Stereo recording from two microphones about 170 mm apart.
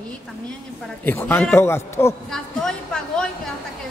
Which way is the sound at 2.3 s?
5° left (ahead or behind).